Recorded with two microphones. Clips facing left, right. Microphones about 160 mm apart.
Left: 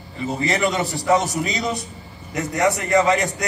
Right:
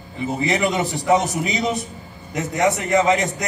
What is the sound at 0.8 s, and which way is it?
A man's voice, 20° right (ahead or behind).